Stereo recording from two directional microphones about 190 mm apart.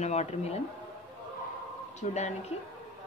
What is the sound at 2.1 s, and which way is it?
Speech, 35° left (ahead or behind).